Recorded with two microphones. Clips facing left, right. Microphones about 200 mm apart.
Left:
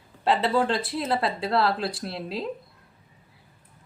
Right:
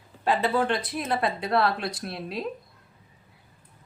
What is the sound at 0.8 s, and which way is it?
Speech, 25° left (ahead or behind).